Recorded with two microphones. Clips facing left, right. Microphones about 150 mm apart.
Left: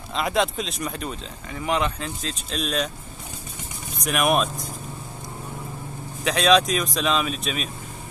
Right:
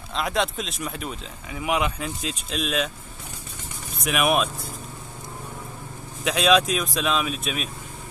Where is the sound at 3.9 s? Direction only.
Centre (ahead or behind).